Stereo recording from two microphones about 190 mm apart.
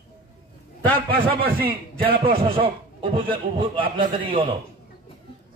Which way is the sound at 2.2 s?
30° right (ahead or behind).